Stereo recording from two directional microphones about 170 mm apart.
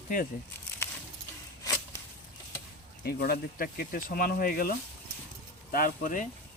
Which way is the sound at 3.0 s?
65° left (ahead or behind).